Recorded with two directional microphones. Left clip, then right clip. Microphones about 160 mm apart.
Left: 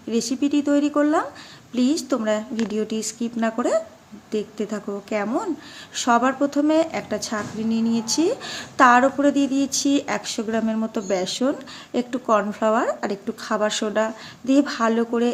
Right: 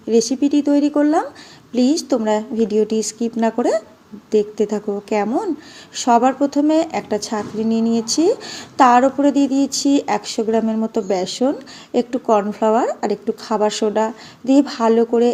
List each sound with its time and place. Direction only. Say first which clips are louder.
0.1 s a woman's voice: right 7 dB; 15° right (ahead or behind)